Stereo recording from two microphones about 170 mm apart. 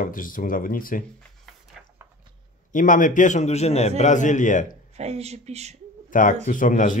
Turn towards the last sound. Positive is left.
turn(degrees=50)  # may be behind; listen again after turning